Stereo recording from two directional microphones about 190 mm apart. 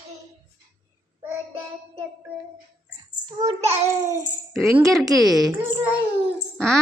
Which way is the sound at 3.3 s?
20° right (ahead or behind).